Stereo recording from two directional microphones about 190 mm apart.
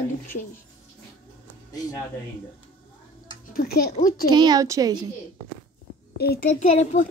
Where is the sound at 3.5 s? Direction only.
50° left (ahead or behind).